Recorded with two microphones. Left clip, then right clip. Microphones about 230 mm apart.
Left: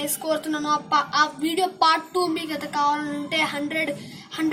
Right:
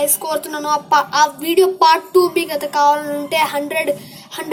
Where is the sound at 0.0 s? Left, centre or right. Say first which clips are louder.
Right 6 dB; right.